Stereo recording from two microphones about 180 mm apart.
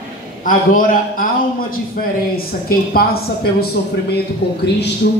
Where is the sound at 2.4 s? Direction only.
55° left (ahead or behind).